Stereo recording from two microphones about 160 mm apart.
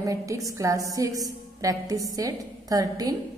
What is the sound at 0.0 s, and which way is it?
A woman's voice, 20° right (ahead or behind).